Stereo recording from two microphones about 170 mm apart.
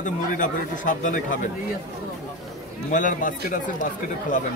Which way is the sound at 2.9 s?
50° left (ahead or behind).